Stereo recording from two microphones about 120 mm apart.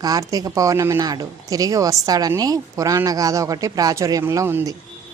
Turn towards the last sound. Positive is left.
turn(degrees=-20)  # may be behind; listen again after turning